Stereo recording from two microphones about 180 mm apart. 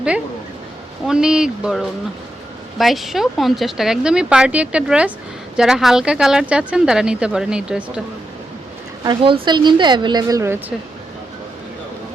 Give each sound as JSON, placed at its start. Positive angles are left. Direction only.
{"t": 1.0, "sound": "a woman's voice", "side_deg": -5}
{"t": 9.0, "sound": "a woman's voice", "side_deg": -30}